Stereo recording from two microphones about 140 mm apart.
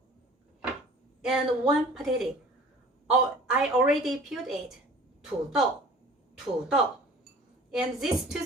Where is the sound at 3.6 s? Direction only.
5° right (ahead or behind).